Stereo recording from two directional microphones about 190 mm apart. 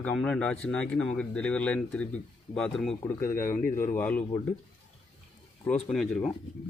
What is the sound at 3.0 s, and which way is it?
Speech, 15° left (ahead or behind).